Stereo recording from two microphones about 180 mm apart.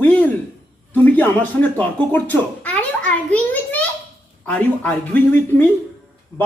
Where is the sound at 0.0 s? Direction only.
10° left (ahead or behind).